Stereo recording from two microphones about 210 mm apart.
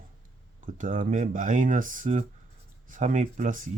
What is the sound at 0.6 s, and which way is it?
Speech, 40° right (ahead or behind).